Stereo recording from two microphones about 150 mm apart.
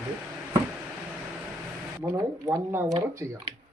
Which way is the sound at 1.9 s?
20° right (ahead or behind).